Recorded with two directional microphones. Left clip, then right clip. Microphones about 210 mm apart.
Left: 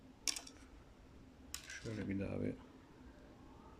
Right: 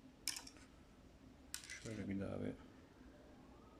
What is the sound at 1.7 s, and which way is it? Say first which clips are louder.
Speech: left 4 dB; centre (ahead or behind).